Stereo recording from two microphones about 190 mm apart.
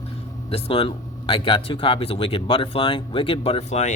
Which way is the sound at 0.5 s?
30° left (ahead or behind).